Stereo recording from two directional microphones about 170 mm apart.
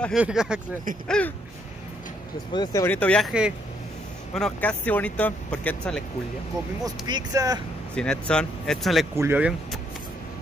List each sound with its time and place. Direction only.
0.2 s speech: 5° right (ahead or behind)
2.5 s speech: 20° left (ahead or behind)
2.9 s speech: 5° left (ahead or behind)
6.8 s speech: 25° right (ahead or behind)
7.9 s speech: 5° left (ahead or behind)
9.1 s speech: 15° right (ahead or behind)